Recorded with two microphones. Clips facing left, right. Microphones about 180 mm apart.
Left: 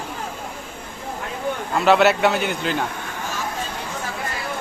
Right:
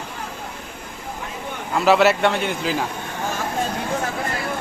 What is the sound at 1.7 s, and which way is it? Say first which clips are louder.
A man's voice: even; centre (ahead or behind).